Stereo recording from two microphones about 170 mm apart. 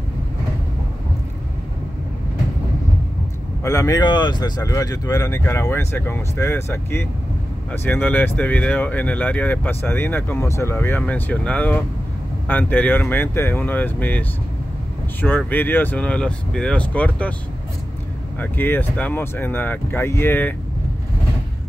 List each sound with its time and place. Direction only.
3.6 s speech: 20° left (ahead or behind)
15.2 s speech: 10° left (ahead or behind)
18.4 s speech: 10° left (ahead or behind)